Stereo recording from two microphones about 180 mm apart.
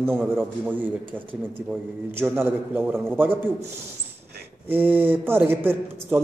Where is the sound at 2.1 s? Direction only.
10° right (ahead or behind).